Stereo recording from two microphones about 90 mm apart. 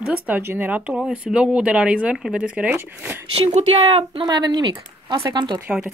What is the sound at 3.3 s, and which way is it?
Speech, 90° right.